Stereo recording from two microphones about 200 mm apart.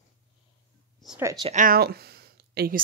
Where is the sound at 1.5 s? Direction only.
45° right (ahead or behind).